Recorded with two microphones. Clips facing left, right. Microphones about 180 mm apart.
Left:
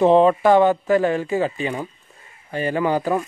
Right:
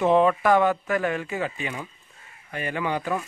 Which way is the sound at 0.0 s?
30° left (ahead or behind).